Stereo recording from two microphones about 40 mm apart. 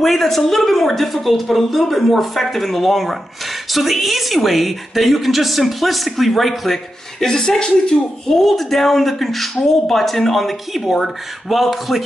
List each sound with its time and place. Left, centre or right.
0.0 s a woman's voice: centre
8.4 s a woman's voice: centre